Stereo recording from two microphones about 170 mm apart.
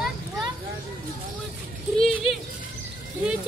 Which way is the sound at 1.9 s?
Centre (ahead or behind).